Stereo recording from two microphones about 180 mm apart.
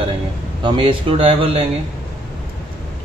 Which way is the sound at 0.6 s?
30° right (ahead or behind).